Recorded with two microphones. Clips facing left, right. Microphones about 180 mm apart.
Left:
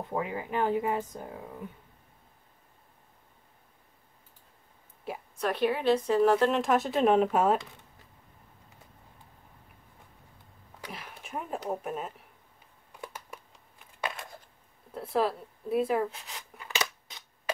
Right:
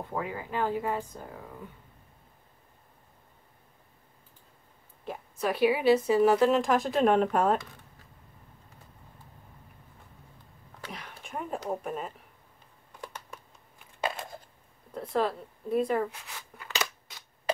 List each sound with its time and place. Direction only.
0.1 s speech: 20° left (ahead or behind)
5.1 s a sound: 10° left (ahead or behind)
5.4 s a woman's voice: 5° right (ahead or behind)
10.9 s speech: 5° left (ahead or behind)
14.0 s a sound: 25° right (ahead or behind)
15.0 s speech: 5° left (ahead or behind)
16.1 s scissors: 20° left (ahead or behind)